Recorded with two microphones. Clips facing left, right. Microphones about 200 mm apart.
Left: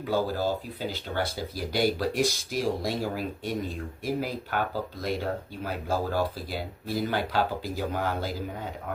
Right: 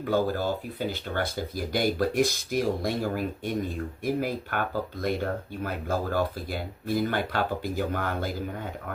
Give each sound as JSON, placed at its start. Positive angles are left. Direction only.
{"t": 0.0, "sound": "speech", "side_deg": -50}